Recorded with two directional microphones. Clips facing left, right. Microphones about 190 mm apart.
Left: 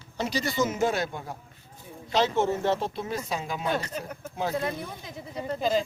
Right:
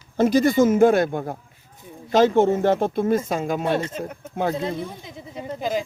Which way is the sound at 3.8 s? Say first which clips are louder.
Right 6 dB; 20° right (ahead or behind).